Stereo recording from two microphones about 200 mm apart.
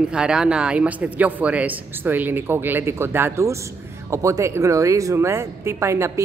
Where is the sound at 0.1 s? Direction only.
5° right (ahead or behind).